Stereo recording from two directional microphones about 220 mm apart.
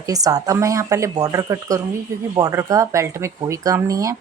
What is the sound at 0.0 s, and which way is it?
Speech, 15° right (ahead or behind).